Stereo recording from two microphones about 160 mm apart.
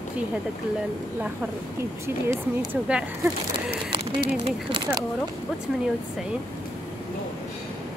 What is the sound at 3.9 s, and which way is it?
Speech, 30° right (ahead or behind).